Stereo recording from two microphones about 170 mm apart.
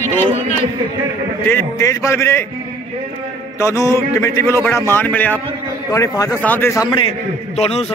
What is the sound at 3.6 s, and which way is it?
A man's voice, 15° left (ahead or behind).